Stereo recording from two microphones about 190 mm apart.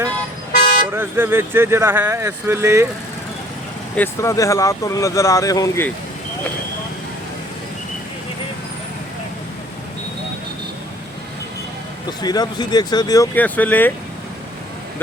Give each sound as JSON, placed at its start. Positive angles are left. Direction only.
{"t": 0.5, "sound": "toot", "side_deg": 30}
{"t": 0.9, "sound": "speech", "side_deg": -10}
{"t": 3.9, "sound": "speech", "side_deg": 10}
{"t": 12.2, "sound": "speech", "side_deg": 20}